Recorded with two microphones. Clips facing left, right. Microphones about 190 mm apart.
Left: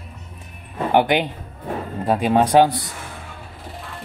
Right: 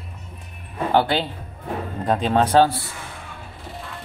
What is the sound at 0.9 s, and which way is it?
Speech, 15° left (ahead or behind).